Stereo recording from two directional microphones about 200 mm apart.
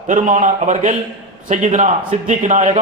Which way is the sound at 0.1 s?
40° right (ahead or behind).